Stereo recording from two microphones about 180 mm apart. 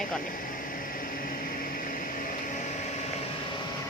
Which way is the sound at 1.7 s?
50° left (ahead or behind).